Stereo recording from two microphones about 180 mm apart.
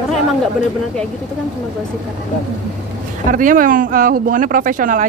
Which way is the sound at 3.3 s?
50° right (ahead or behind).